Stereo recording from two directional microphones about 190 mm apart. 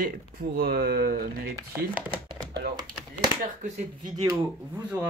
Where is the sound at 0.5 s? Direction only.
50° right (ahead or behind).